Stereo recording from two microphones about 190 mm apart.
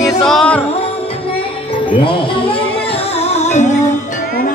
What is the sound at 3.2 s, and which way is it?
Music, 35° left (ahead or behind).